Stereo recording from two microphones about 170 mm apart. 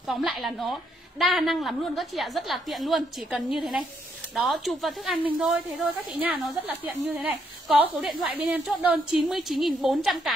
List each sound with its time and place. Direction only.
0.0 s a woman's voice: centre (ahead or behind)
7.1 s a woman's voice: centre (ahead or behind)